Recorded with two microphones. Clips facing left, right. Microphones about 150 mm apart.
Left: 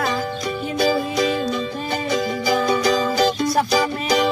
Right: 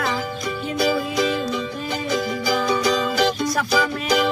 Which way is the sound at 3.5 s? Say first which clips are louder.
Left 2 dB; 30° left (ahead or behind).